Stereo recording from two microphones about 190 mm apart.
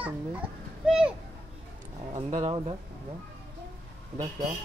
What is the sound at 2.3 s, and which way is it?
Speech, 30° right (ahead or behind).